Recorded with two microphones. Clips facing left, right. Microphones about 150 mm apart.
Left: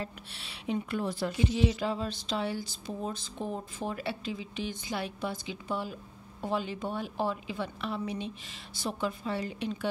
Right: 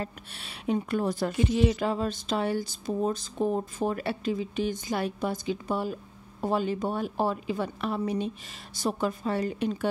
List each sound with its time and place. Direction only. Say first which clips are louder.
0.0 s a woman's voice: right 3 dB; 50° right (ahead or behind)